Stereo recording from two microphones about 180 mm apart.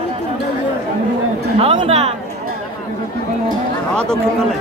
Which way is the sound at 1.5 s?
30° right (ahead or behind).